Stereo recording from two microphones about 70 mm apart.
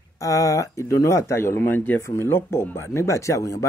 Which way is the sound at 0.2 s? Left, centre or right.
Left.